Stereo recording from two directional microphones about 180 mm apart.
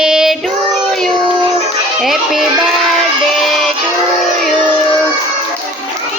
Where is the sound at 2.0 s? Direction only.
Centre (ahead or behind).